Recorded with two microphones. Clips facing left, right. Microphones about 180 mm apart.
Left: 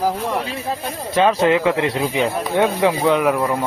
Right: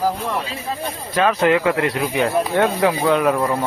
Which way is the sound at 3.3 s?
5° left (ahead or behind).